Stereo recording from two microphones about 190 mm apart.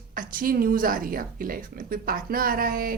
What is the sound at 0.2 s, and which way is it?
A woman's voice, 45° right (ahead or behind).